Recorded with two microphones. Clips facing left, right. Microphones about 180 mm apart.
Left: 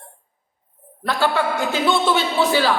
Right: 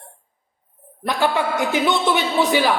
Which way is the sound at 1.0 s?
15° right (ahead or behind).